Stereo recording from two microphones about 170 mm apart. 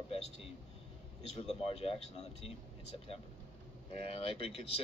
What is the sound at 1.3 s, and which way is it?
Speech, 35° left (ahead or behind).